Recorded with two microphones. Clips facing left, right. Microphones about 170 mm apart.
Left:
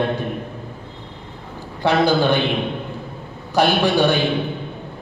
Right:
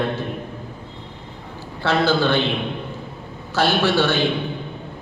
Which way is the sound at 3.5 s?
15° left (ahead or behind).